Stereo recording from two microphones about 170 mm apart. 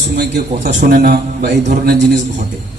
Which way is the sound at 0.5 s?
45° right (ahead or behind).